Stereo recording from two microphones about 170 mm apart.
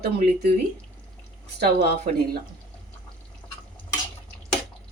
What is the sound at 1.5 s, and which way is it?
Speech, 70° right (ahead or behind).